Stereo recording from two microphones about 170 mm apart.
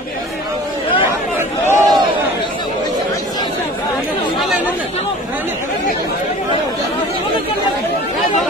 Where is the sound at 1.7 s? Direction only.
20° right (ahead or behind).